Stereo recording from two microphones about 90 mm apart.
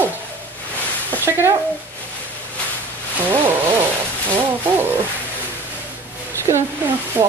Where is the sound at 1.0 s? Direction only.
25° right (ahead or behind).